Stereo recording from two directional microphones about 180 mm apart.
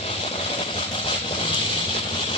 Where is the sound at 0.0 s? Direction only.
35° left (ahead or behind).